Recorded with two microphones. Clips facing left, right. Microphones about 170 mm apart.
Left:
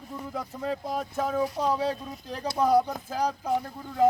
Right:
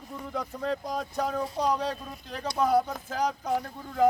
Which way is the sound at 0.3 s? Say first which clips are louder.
Right 1 dB; 5° left (ahead or behind).